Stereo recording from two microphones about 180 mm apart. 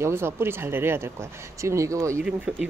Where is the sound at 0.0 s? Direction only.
15° right (ahead or behind).